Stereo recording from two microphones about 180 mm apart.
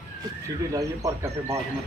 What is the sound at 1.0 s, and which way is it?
Speech, 20° right (ahead or behind).